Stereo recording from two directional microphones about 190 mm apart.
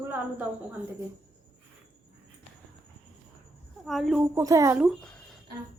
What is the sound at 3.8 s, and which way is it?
Speech, centre (ahead or behind).